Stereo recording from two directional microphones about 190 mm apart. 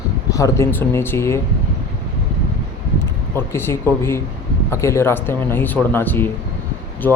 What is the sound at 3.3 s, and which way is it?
A man's voice, 10° left (ahead or behind).